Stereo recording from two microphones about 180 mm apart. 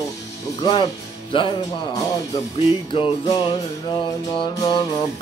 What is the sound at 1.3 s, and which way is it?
Speech, 25° left (ahead or behind).